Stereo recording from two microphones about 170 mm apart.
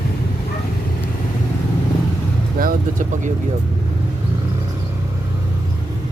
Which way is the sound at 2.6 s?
55° right (ahead or behind).